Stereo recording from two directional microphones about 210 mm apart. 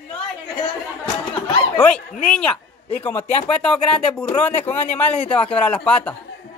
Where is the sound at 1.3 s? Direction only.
5° left (ahead or behind).